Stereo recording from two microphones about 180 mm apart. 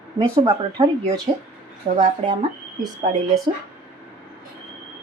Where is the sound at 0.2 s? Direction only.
20° right (ahead or behind).